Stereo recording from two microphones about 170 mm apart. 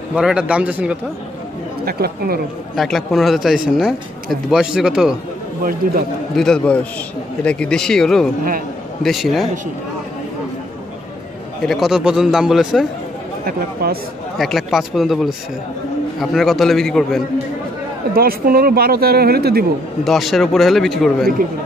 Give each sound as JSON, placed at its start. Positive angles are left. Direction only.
{"t": 0.1, "sound": "a man's voice", "side_deg": -5}
{"t": 1.9, "sound": "a man's voice", "side_deg": -65}
{"t": 2.7, "sound": "speech", "side_deg": 0}
{"t": 5.6, "sound": "a man's voice", "side_deg": -60}
{"t": 6.3, "sound": "a man's voice", "side_deg": 5}
{"t": 11.6, "sound": "speech", "side_deg": 0}
{"t": 13.5, "sound": "a man's voice", "side_deg": -65}
{"t": 14.4, "sound": "speech", "side_deg": 0}
{"t": 18.1, "sound": "a man's voice", "side_deg": -60}
{"t": 20.1, "sound": "speech", "side_deg": 0}